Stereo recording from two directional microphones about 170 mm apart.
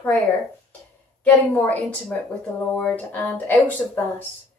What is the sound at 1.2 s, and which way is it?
A woman's voice, 10° left (ahead or behind).